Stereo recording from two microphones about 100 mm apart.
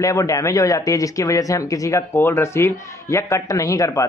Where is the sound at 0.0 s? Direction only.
35° left (ahead or behind).